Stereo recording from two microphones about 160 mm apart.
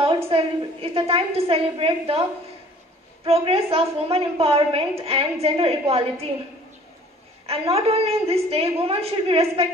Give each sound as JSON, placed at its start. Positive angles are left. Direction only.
{"t": 0.3, "sound": "a woman's voice", "side_deg": -35}
{"t": 3.3, "sound": "a woman's voice", "side_deg": -35}
{"t": 7.4, "sound": "a woman's voice", "side_deg": -40}